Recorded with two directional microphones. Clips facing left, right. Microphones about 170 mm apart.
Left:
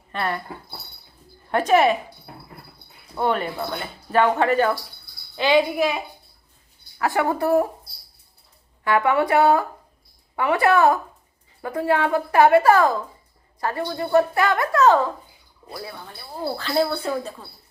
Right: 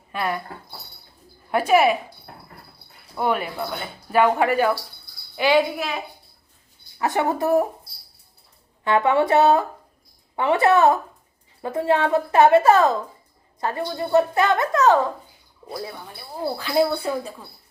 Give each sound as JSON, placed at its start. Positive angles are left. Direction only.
{"t": 0.1, "sound": "speech", "side_deg": -10}
{"t": 1.5, "sound": "speech", "side_deg": -10}
{"t": 3.2, "sound": "speech", "side_deg": -10}
{"t": 7.0, "sound": "a woman's voice", "side_deg": -20}
{"t": 8.8, "sound": "a woman's voice", "side_deg": -20}